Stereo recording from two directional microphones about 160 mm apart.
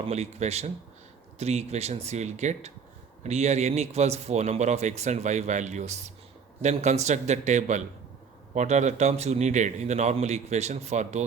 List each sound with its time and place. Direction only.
0.0 s speech: 45° right (ahead or behind)